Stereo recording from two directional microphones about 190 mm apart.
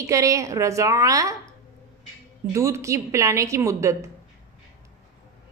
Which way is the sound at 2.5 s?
15° right (ahead or behind).